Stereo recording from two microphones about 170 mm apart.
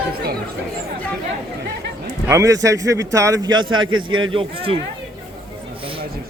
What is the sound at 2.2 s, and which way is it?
Speech, 20° right (ahead or behind).